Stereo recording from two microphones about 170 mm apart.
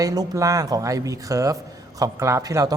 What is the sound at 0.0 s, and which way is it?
Speech, 20° right (ahead or behind).